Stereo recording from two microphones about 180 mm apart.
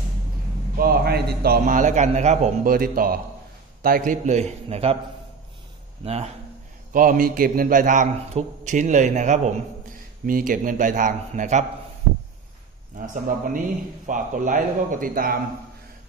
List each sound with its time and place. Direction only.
0.7 s a man's voice: 60° right (ahead or behind); by 4.9 s 35° right (ahead or behind)
6.0 s a man's voice: 35° right (ahead or behind)
6.9 s a man's voice: 50° right (ahead or behind)
13.0 s a man's voice: 45° right (ahead or behind)